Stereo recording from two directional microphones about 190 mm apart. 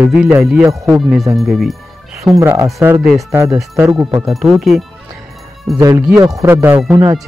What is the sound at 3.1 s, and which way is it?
Speech, centre (ahead or behind).